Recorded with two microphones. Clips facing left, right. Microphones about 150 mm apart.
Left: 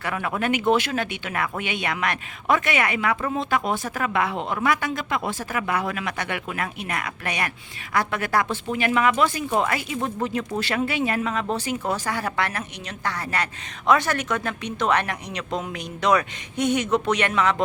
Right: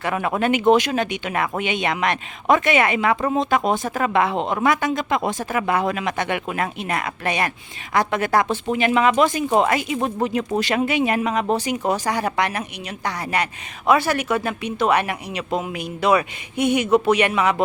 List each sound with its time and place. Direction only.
0.0 s speech: 25° right (ahead or behind)